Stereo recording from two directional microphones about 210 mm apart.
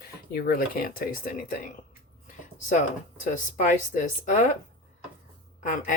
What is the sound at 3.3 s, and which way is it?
Speech, 35° left (ahead or behind).